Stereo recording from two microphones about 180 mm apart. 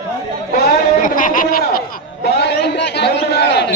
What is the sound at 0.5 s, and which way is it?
Bleat, 55° left (ahead or behind).